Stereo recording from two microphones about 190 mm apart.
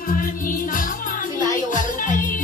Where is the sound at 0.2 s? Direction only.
45° left (ahead or behind).